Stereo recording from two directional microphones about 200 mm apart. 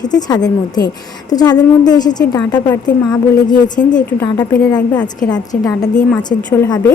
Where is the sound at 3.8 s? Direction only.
40° left (ahead or behind).